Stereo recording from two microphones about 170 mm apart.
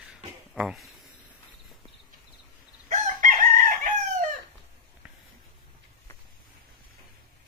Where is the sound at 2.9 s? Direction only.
50° right (ahead or behind).